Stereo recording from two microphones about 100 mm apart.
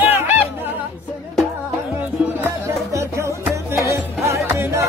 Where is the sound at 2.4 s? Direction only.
30° right (ahead or behind).